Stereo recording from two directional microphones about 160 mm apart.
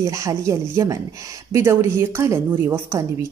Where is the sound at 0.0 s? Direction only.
20° right (ahead or behind).